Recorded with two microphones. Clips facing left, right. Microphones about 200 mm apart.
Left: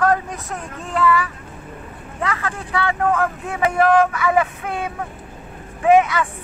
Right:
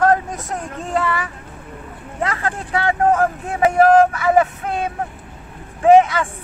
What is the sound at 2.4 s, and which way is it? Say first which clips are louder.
Speech: right 4 dB; 35° right (ahead or behind).